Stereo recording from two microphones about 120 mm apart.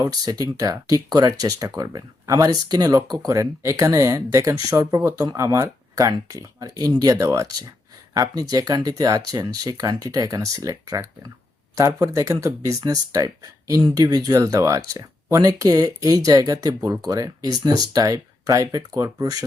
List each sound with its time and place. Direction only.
0.0 s speech: 30° right (ahead or behind)